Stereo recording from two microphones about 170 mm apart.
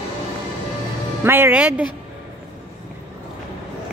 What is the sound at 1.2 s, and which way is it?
Speech, 10° right (ahead or behind).